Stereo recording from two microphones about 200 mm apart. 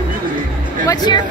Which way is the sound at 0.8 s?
20° left (ahead or behind).